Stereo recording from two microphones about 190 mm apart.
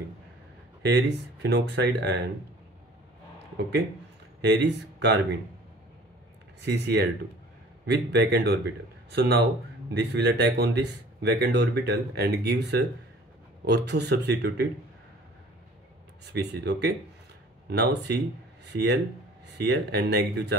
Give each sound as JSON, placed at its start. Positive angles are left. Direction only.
{"t": 0.9, "sound": "speech", "side_deg": -60}
{"t": 4.4, "sound": "speech", "side_deg": -60}
{"t": 6.6, "sound": "speech", "side_deg": -65}
{"t": 16.3, "sound": "speech", "side_deg": -60}